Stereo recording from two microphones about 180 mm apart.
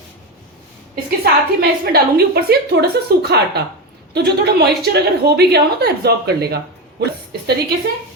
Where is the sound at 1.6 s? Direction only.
60° right (ahead or behind).